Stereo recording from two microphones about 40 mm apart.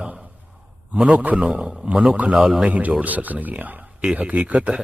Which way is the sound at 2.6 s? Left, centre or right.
Right.